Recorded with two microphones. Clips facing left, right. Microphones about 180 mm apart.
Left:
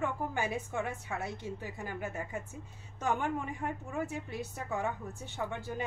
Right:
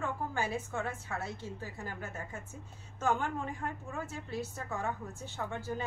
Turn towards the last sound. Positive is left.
turn(degrees=20)  # may be behind; listen again after turning